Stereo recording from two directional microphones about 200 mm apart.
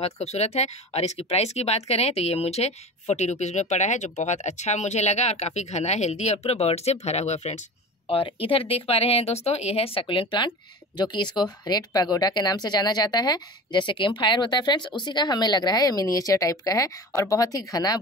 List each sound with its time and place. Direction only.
0.0 s speech: 35° left (ahead or behind); by 17.9 s 20° left (ahead or behind)